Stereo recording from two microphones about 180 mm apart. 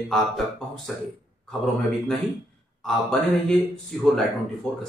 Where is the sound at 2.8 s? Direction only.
Centre (ahead or behind).